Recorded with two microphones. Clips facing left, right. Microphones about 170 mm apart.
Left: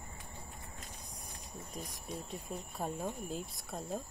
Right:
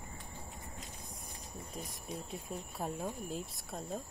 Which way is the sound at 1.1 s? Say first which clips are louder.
Right 1 dB; centre (ahead or behind).